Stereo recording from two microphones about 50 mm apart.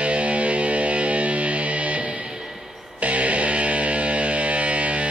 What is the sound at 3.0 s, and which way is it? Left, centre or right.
Music, right.